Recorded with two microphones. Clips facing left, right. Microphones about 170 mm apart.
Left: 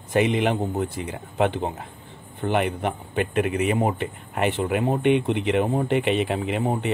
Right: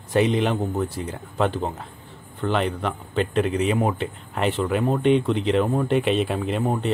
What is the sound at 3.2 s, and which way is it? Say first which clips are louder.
Speech: right 1 dB; 55° left (ahead or behind).